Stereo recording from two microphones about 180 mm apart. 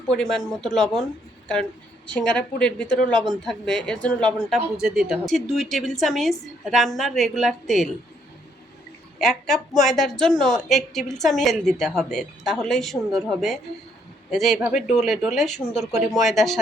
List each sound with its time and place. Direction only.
0.1 s a woman's voice: 5° left (ahead or behind)
2.0 s a woman's voice: 5° left (ahead or behind)
9.1 s a woman's voice: centre (ahead or behind)